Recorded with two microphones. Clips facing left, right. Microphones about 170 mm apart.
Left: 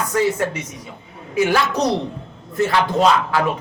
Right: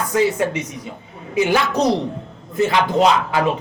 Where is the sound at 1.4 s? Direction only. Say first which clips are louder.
Right 1 dB; 20° right (ahead or behind).